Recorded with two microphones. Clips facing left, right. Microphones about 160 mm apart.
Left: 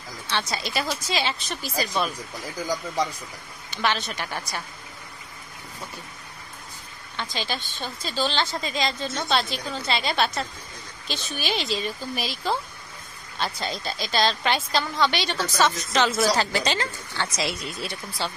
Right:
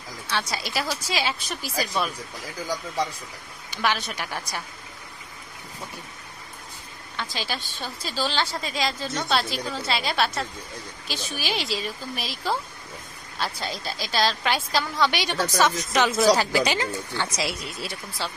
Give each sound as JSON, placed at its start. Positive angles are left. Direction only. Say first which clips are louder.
{"t": 0.3, "sound": "a woman's voice", "louder": "left 1 dB", "side_deg": -10}
{"t": 3.7, "sound": "a woman's voice", "louder": "even", "side_deg": -10}
{"t": 7.2, "sound": "a woman's voice", "louder": "left 1 dB", "side_deg": -5}